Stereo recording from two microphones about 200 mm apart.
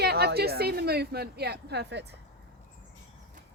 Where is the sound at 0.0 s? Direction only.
55° right (ahead or behind).